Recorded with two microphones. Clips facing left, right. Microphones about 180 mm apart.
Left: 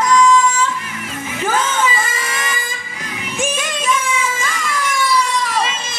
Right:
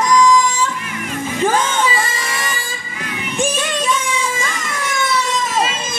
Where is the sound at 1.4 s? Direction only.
10° right (ahead or behind).